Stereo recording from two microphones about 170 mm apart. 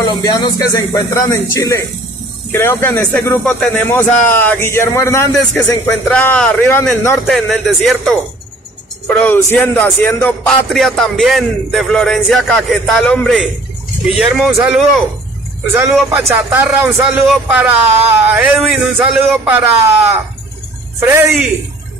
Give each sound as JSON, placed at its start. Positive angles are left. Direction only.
{"t": 0.0, "sound": "speech", "side_deg": 20}
{"t": 7.2, "sound": "music", "side_deg": 0}
{"t": 9.1, "sound": "music", "side_deg": 10}
{"t": 15.7, "sound": "a man's voice", "side_deg": -15}